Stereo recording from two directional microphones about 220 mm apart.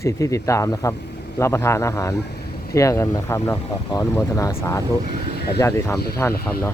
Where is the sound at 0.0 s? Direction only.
15° left (ahead or behind).